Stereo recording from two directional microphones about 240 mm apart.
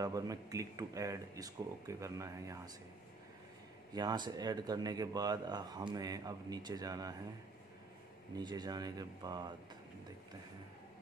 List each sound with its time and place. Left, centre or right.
0.0 s speech: centre
3.9 s speech: centre
8.4 s speech: centre